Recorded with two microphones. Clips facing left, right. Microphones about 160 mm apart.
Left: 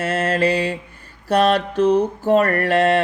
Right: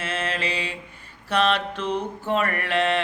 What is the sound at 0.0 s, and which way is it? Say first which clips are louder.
Mantra: left 9 dB; 40° left (ahead or behind).